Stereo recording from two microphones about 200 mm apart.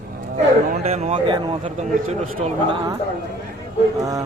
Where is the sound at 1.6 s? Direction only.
35° right (ahead or behind).